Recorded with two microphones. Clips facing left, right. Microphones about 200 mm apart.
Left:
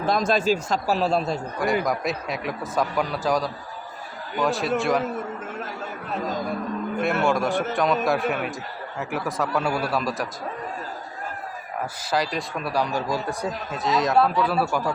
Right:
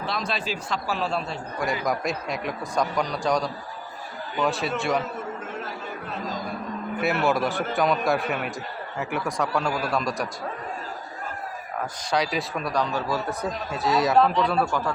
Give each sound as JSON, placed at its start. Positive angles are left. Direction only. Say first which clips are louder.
{"t": 0.0, "sound": "a man's voice", "louder": "left 8 dB", "side_deg": 45}
{"t": 1.8, "sound": "a man's voice", "louder": "left 1 dB", "side_deg": 0}
{"t": 7.0, "sound": "a man's voice", "louder": "even", "side_deg": -5}
{"t": 12.1, "sound": "speech", "louder": "even", "side_deg": 0}
{"t": 13.7, "sound": "a man's voice", "louder": "right 1 dB", "side_deg": 0}